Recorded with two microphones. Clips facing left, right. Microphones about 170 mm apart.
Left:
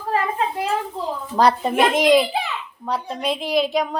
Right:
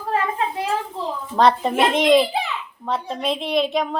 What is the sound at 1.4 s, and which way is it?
A woman's voice, centre (ahead or behind).